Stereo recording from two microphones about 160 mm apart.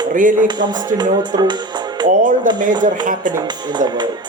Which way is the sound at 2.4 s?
55° right (ahead or behind).